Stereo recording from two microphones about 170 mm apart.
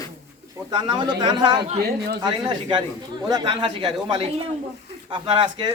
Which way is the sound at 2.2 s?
25° right (ahead or behind).